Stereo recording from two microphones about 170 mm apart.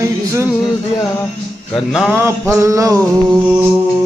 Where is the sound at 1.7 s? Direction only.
Centre (ahead or behind).